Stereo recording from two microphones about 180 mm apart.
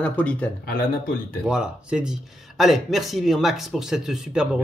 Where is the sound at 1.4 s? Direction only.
5° right (ahead or behind).